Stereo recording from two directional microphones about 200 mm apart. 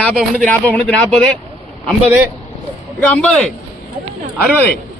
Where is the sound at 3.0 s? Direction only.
5° left (ahead or behind).